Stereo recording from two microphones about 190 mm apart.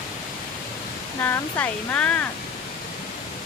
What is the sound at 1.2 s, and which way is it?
Speech, 10° left (ahead or behind).